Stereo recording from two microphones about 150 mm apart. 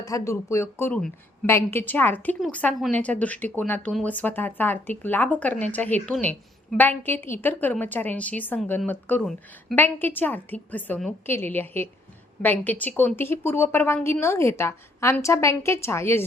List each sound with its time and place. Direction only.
0.0 s speech: 20° left (ahead or behind)